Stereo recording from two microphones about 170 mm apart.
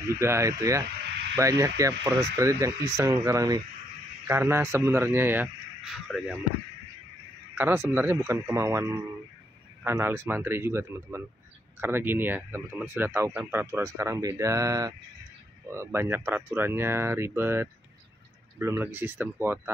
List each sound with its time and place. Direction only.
0.1 s speech: 15° right (ahead or behind)
5.9 s speech: centre (ahead or behind)
7.5 s speech: 10° right (ahead or behind)